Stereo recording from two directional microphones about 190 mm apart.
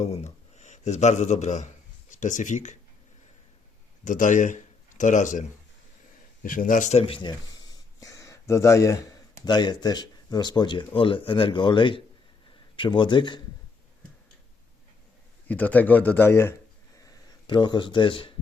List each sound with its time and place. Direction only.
0.0 s a man's voice: 35° left (ahead or behind)
4.0 s a man's voice: 40° left (ahead or behind); by 13.4 s 25° left (ahead or behind)
15.4 s speech: 10° left (ahead or behind)
17.0 s a sound: 20° left (ahead or behind)